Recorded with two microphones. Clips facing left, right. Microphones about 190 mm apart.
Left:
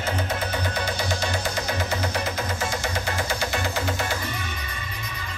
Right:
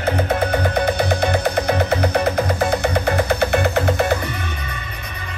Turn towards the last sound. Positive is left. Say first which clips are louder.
# right 9 dB
turn(degrees=-60)  # may be behind; listen again after turning